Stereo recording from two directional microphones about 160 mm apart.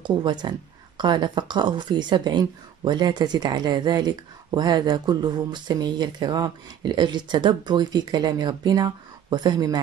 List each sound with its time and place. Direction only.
0.0 s speech: 30° right (ahead or behind)